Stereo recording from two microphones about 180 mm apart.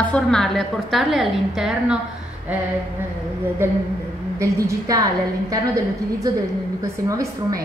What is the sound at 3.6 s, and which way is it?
A woman's voice, 10° right (ahead or behind).